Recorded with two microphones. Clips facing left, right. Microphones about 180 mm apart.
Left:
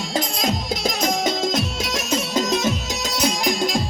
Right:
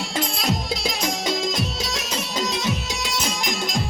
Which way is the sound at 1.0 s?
50° left (ahead or behind).